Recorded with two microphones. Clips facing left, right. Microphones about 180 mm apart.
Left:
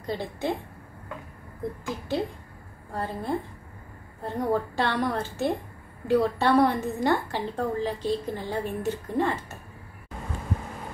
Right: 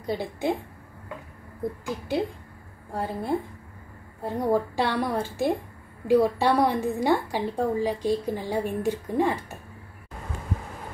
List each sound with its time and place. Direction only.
0.0 s a woman's voice: 10° right (ahead or behind)
2.9 s a woman's voice: 10° right (ahead or behind)